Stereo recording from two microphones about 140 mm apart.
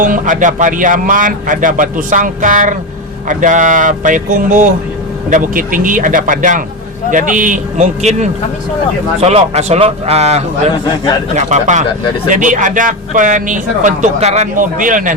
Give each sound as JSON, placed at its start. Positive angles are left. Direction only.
{"t": 0.0, "sound": "a man's voice", "side_deg": -70}